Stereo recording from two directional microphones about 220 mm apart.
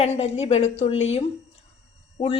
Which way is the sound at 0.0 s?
30° left (ahead or behind).